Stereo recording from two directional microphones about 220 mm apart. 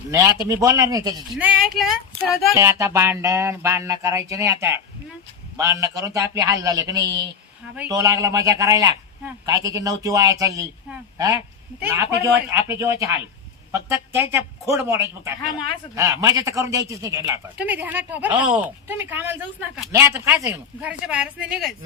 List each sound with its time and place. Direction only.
0.1 s a man's voice: 15° right (ahead or behind)
2.6 s a man's voice: 15° right (ahead or behind)
11.8 s a man's voice: 10° right (ahead or behind)